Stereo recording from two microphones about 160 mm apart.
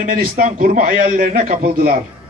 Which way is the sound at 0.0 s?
60° right (ahead or behind).